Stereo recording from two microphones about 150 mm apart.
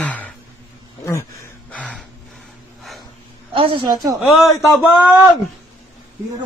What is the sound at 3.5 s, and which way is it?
Speech, 35° right (ahead or behind).